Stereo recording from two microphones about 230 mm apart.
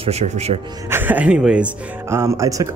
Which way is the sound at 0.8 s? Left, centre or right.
Centre.